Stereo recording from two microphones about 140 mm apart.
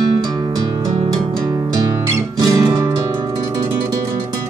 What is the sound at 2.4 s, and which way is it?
Guitar, 25° right (ahead or behind).